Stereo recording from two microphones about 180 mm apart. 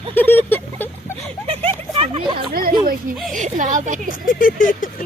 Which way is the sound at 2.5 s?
55° right (ahead or behind).